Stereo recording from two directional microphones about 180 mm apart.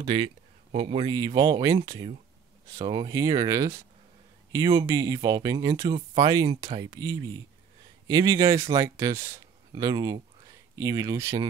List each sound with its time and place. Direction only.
0.0 s speech: 30° right (ahead or behind)